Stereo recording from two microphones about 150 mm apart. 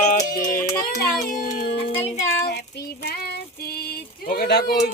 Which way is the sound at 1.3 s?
60° left (ahead or behind).